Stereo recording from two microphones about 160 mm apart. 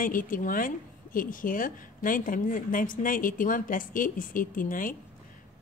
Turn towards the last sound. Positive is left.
turn(degrees=60)  # may be behind; listen again after turning